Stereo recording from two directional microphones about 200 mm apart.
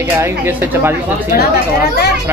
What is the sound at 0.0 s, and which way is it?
Speech, 10° right (ahead or behind).